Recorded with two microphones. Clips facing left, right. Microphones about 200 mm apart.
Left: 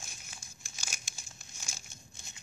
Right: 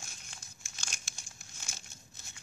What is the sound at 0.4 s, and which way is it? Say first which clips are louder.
Crumpling: left 1 dB; 10° left (ahead or behind).